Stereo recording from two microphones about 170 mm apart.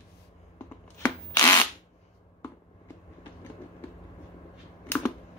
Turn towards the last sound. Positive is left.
turn(degrees=10)  # may be behind; listen again after turning